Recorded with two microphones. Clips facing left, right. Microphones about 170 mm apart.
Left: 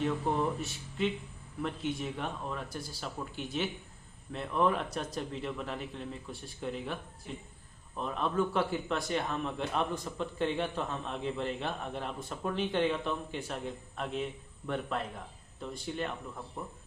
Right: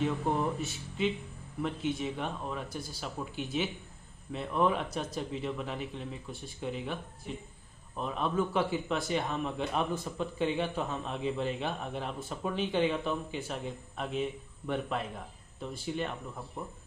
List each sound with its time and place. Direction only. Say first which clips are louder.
0.6 s a man's voice: right 1 dB; centre (ahead or behind)